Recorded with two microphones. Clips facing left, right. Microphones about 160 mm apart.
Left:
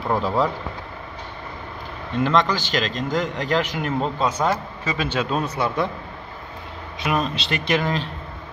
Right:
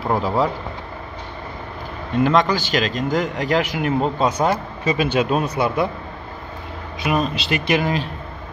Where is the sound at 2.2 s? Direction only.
10° right (ahead or behind).